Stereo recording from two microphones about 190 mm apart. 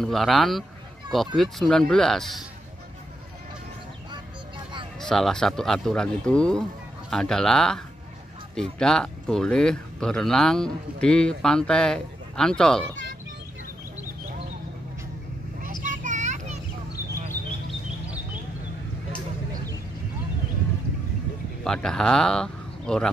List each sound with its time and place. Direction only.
0.0 s speech: centre (ahead or behind)
5.0 s speech: 5° left (ahead or behind)
15.6 s child singing: 45° right (ahead or behind)
21.6 s speech: 5° left (ahead or behind)